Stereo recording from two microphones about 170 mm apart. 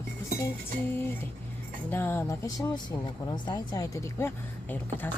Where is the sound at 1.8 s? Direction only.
10° left (ahead or behind).